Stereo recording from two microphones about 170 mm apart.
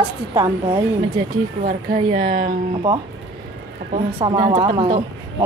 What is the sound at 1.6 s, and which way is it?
Speech, 50° right (ahead or behind).